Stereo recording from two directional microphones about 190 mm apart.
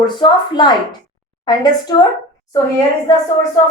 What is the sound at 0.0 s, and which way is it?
A woman's voice, 25° left (ahead or behind).